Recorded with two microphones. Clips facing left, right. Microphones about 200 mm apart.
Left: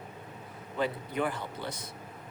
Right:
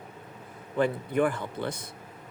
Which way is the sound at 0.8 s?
50° right (ahead or behind).